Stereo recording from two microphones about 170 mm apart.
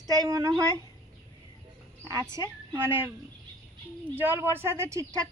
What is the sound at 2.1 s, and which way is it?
Speech, 15° right (ahead or behind).